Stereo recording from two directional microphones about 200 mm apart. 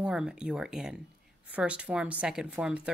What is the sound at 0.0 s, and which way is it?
Speech, 5° right (ahead or behind).